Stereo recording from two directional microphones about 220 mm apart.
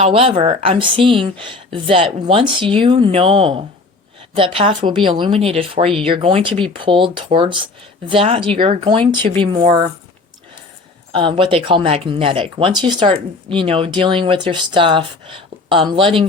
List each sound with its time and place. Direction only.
0.0 s speech: 25° right (ahead or behind)
11.1 s speech: 25° right (ahead or behind)